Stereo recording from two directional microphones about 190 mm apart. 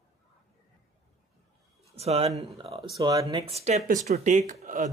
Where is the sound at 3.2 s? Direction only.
30° right (ahead or behind).